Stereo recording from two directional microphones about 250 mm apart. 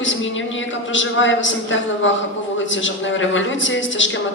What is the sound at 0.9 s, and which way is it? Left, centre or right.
A woman's voice, left.